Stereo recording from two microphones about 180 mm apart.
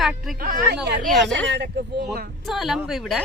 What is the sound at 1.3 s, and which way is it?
Speech, 85° right.